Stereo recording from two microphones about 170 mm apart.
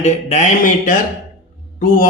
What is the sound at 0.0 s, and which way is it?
A man's voice, 45° left (ahead or behind).